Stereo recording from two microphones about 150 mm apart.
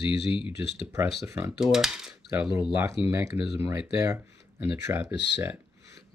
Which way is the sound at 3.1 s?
20° right (ahead or behind).